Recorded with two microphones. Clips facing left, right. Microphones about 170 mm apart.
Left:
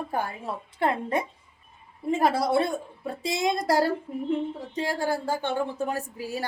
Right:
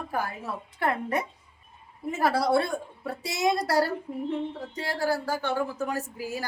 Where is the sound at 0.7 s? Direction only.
25° left (ahead or behind).